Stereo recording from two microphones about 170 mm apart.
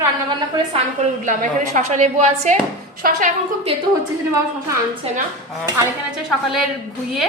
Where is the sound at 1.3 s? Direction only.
45° right (ahead or behind).